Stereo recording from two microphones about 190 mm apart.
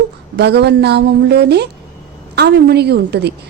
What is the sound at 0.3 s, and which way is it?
A woman's voice, 60° right (ahead or behind).